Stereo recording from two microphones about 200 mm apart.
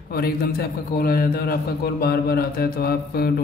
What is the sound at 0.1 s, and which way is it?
A man's voice, 50° left (ahead or behind).